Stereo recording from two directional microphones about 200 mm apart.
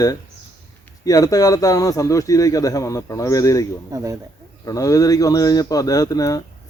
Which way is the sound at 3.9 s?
15° right (ahead or behind).